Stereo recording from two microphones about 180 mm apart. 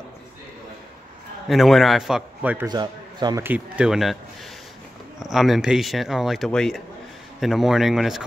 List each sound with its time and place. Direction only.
1.5 s speech: centre (ahead or behind)
2.6 s a man's voice: 25° right (ahead or behind)
3.4 s speech: 5° right (ahead or behind)
5.2 s speech: centre (ahead or behind)